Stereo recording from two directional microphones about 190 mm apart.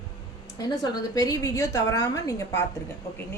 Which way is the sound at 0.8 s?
20° left (ahead or behind).